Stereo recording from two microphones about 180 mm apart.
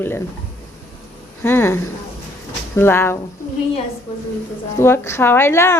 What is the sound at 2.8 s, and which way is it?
Speech, 15° left (ahead or behind).